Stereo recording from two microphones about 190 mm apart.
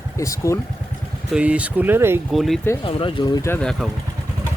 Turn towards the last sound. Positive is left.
turn(degrees=5)  # may be behind; listen again after turning